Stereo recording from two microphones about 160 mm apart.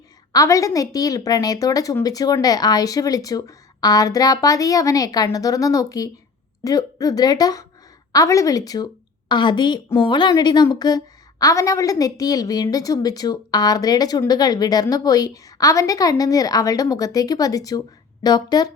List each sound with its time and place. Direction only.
0.3 s a woman's voice: 20° left (ahead or behind)